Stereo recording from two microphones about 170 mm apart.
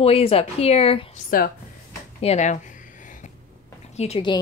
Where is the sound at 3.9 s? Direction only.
35° left (ahead or behind).